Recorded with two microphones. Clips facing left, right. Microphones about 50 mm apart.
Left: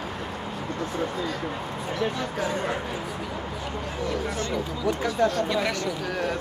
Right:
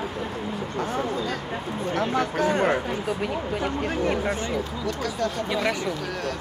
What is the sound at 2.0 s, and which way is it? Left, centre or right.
Speech, right.